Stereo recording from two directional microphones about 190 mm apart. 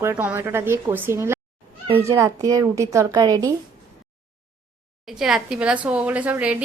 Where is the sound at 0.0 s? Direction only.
10° right (ahead or behind).